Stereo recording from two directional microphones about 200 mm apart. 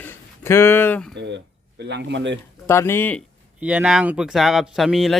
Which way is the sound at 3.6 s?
5° right (ahead or behind).